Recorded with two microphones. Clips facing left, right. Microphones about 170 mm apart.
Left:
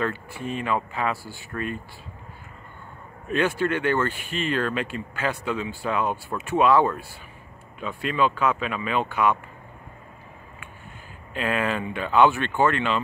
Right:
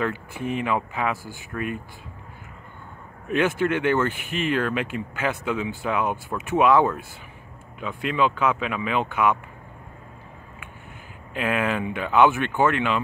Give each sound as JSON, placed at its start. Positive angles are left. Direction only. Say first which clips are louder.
{"t": 0.0, "sound": "speech", "louder": "right 1 dB", "side_deg": -15}
{"t": 3.3, "sound": "speech", "louder": "right 1 dB", "side_deg": -15}
{"t": 11.3, "sound": "speech", "louder": "right 1 dB", "side_deg": -10}